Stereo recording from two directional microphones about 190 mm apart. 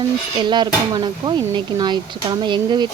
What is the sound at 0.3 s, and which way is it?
Speech, 25° right (ahead or behind).